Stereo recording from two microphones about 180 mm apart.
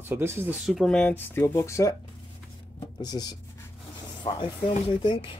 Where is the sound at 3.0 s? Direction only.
20° left (ahead or behind).